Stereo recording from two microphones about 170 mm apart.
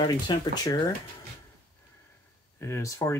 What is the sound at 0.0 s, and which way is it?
Speech, 25° left (ahead or behind).